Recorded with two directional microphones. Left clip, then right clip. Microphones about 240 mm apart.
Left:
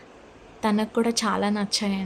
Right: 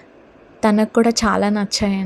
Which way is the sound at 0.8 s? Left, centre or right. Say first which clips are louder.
Right 8 dB; right.